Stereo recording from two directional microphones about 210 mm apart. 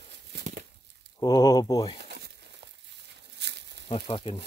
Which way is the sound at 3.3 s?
55° right (ahead or behind).